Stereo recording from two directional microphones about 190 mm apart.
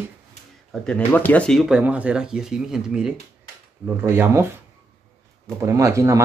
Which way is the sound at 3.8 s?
10° right (ahead or behind).